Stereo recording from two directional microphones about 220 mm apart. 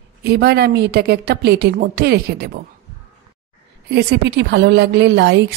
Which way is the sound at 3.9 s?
50° right (ahead or behind).